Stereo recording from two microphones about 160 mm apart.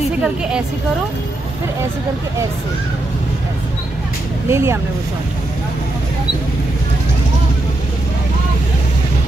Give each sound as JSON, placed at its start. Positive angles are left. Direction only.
{"t": 0.2, "sound": "a woman's voice", "side_deg": -5}
{"t": 4.5, "sound": "speech", "side_deg": -15}